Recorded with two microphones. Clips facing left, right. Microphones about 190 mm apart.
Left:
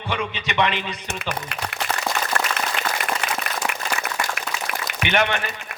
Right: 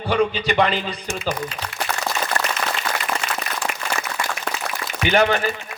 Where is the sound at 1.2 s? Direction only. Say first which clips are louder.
Right 3 dB; 65° left (ahead or behind).